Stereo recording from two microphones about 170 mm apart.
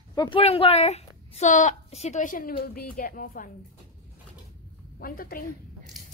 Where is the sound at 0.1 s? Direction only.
30° left (ahead or behind); by 3.4 s 60° left (ahead or behind).